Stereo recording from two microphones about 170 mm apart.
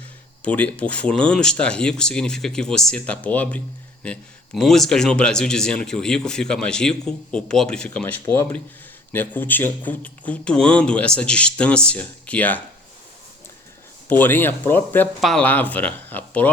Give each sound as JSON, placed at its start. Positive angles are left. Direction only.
{"t": 0.4, "sound": "a man's voice", "side_deg": 10}
{"t": 14.1, "sound": "speech", "side_deg": 10}